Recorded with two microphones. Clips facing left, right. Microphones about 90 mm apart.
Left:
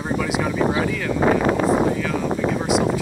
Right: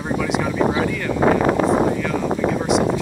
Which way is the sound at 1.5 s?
35° right (ahead or behind).